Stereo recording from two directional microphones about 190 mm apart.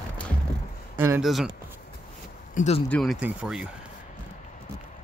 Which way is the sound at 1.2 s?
Centre (ahead or behind).